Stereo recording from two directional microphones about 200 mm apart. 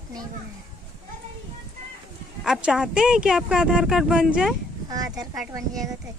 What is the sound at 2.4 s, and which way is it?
Speech, 5° right (ahead or behind).